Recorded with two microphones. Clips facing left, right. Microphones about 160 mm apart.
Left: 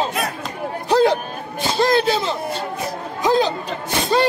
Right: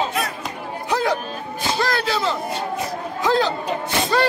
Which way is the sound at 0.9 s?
30° left (ahead or behind).